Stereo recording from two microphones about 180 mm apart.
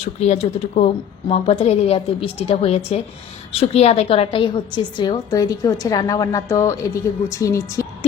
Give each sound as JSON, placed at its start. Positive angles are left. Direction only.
{"t": 0.0, "sound": "a woman's voice", "side_deg": 35}